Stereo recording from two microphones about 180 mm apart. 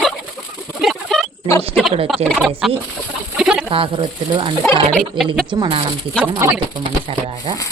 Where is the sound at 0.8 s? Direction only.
Centre (ahead or behind).